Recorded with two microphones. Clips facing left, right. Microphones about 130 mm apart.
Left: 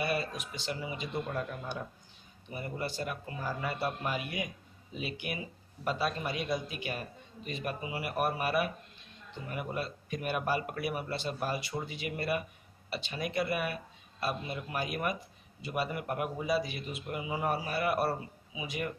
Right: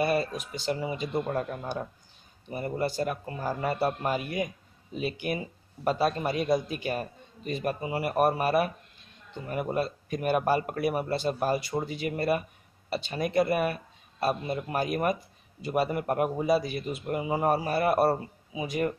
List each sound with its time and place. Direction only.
0.0 s a man's voice: 40° right (ahead or behind)